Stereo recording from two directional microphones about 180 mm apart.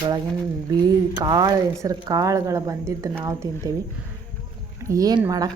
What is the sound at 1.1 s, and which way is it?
Speech, 20° right (ahead or behind).